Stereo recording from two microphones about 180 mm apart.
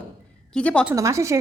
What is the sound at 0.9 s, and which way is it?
Speech, 15° right (ahead or behind).